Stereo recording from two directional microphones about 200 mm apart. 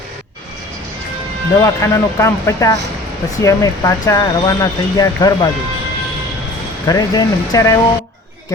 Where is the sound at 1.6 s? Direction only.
15° left (ahead or behind).